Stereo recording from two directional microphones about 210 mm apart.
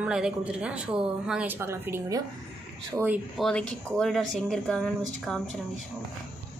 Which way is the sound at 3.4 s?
5° left (ahead or behind).